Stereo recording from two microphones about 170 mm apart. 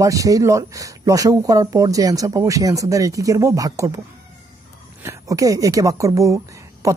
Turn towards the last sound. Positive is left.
turn(degrees=-20)  # may be behind; listen again after turning